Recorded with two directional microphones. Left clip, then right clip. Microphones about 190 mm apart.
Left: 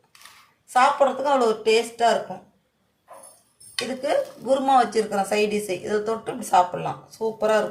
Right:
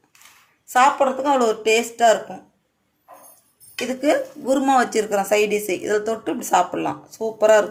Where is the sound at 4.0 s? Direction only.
50° right (ahead or behind).